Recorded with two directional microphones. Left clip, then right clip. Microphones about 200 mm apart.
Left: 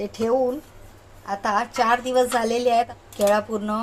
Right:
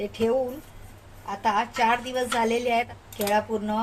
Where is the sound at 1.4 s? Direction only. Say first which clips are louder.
Left 1 dB; 30° left (ahead or behind).